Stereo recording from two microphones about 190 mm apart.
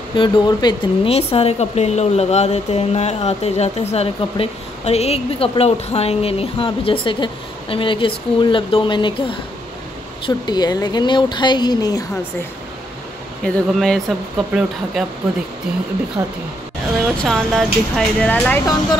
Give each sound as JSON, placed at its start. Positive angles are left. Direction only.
{"t": 0.1, "sound": "speech", "side_deg": 25}
{"t": 13.4, "sound": "speech", "side_deg": 5}
{"t": 16.2, "sound": "speech", "side_deg": -15}
{"t": 17.2, "sound": "speech", "side_deg": 0}